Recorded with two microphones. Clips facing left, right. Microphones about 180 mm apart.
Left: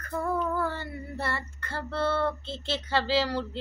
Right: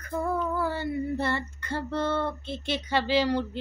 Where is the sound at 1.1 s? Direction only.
20° right (ahead or behind).